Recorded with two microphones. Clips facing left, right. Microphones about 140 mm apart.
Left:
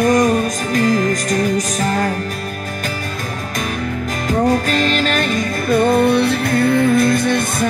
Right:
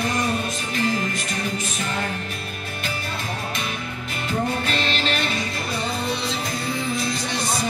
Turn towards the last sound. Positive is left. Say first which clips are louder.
# left 9 dB
turn(degrees=55)  # may be behind; listen again after turning